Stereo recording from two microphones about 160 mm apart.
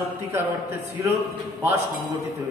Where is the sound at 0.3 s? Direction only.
15° right (ahead or behind).